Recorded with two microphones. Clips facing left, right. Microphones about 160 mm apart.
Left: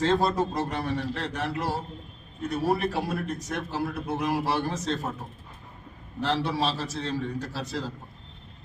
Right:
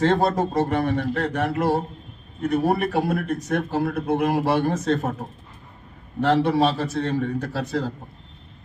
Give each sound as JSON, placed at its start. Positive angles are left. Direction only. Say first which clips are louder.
{"t": 0.0, "sound": "a man's voice", "louder": "right 4 dB", "side_deg": -55}
{"t": 6.1, "sound": "a man's voice", "louder": "right 8 dB", "side_deg": -55}